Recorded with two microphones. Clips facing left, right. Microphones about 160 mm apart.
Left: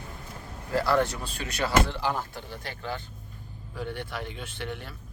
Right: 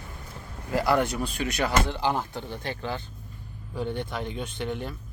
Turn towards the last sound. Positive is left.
turn(degrees=-20)  # may be behind; listen again after turning